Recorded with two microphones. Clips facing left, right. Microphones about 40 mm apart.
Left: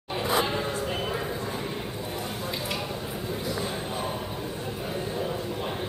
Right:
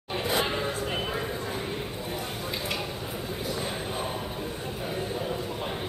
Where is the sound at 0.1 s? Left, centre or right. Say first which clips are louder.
Left 1 dB; centre.